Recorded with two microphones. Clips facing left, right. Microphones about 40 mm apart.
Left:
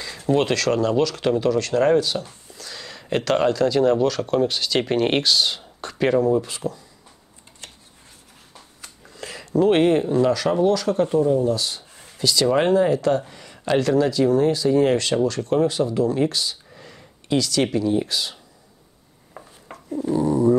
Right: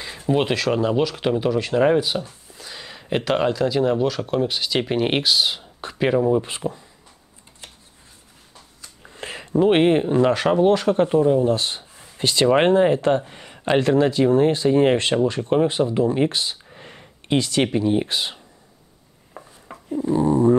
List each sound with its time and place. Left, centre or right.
0.0 s speech: right
6.4 s speech: right
9.0 s speech: right
20.0 s dog: right